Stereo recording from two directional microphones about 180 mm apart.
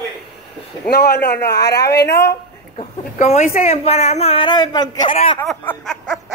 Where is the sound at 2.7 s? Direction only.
35° left (ahead or behind).